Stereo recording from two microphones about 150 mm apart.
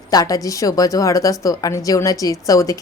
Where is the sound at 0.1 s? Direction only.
25° left (ahead or behind).